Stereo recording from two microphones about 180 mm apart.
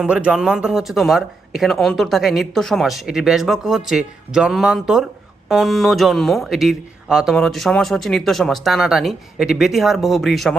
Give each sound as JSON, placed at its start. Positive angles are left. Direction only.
{"t": 0.0, "sound": "speech", "side_deg": -5}